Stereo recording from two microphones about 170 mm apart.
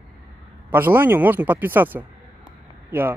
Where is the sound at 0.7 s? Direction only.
10° right (ahead or behind).